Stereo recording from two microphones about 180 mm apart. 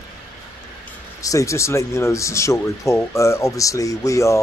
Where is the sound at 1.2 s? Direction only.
20° left (ahead or behind).